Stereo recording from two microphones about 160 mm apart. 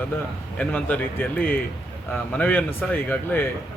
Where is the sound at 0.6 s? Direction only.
10° left (ahead or behind).